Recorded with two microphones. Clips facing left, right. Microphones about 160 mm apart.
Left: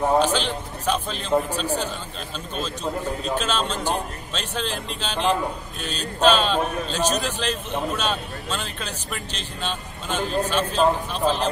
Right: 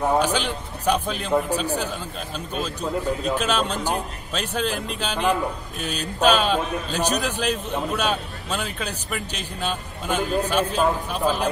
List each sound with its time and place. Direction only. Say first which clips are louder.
0.2 s a man's voice: left 1 dB; 10° right (ahead or behind)
3.3 s a man's voice: right 2 dB; 10° right (ahead or behind)